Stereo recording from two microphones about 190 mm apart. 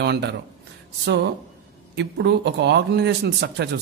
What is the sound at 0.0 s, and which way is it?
Speech, 60° right (ahead or behind).